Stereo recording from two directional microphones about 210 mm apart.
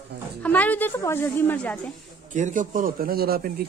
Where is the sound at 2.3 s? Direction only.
35° right (ahead or behind).